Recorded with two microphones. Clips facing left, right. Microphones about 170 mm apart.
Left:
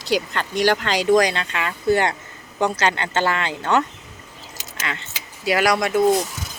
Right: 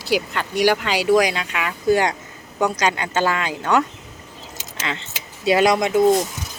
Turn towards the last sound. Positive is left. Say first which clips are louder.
# right 3 dB
turn(degrees=-20)  # may be behind; listen again after turning